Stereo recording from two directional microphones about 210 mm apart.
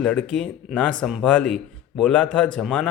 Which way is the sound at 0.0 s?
5° left (ahead or behind).